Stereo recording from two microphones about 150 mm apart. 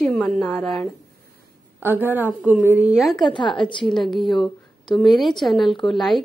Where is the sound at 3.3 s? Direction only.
30° left (ahead or behind).